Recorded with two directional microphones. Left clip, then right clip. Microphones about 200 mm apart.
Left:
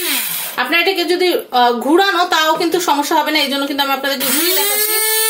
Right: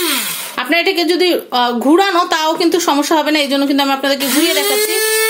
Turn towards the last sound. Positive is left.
turn(degrees=-40)  # may be behind; listen again after turning